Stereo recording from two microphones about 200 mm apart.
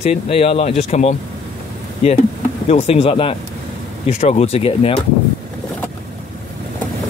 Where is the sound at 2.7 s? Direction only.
30° left (ahead or behind).